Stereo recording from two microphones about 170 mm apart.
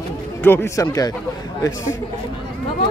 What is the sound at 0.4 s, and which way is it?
Speech, 15° left (ahead or behind).